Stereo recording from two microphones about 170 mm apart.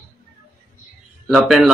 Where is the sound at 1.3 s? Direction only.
Centre (ahead or behind).